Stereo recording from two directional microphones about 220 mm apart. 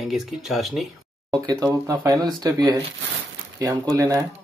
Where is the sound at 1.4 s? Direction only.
15° right (ahead or behind).